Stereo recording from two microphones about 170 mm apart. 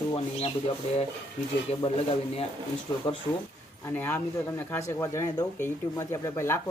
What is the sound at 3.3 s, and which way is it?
Speech, 15° left (ahead or behind).